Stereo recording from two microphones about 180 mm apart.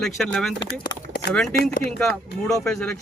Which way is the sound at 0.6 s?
25° left (ahead or behind).